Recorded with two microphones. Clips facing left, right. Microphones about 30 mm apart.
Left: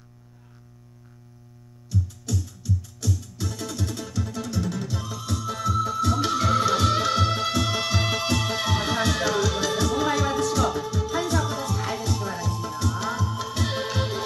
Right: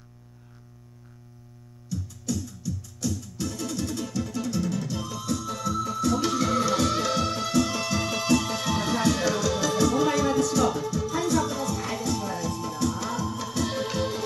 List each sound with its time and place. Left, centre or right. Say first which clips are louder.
2.3 s music: left 5 dB; centre
5.2 s music: left 2 dB; left